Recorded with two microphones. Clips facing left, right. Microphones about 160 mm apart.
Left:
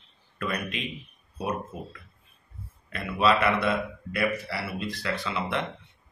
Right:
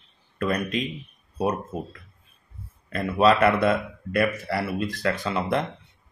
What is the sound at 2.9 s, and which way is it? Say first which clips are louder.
A man's voice: right 5 dB; 45° right (ahead or behind).